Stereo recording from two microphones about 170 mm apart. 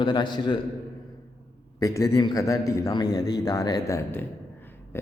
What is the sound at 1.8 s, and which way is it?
A man's voice, 20° left (ahead or behind).